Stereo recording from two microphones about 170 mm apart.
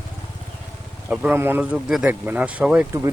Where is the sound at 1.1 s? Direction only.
10° right (ahead or behind).